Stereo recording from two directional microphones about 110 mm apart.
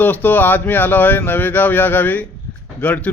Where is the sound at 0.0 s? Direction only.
15° left (ahead or behind).